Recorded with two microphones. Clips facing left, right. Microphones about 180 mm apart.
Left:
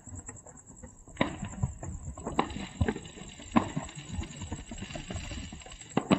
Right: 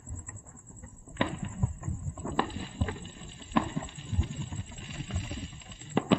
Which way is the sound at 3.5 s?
10° left (ahead or behind).